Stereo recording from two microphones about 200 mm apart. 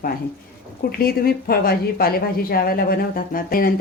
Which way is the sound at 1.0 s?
50° left (ahead or behind).